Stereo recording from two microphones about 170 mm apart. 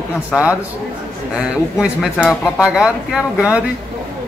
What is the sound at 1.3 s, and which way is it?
A man's voice, 5° right (ahead or behind).